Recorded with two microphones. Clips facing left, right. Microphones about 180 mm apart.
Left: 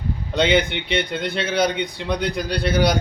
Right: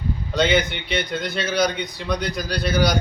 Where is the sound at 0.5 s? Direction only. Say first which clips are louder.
Left 2 dB; 25° left (ahead or behind).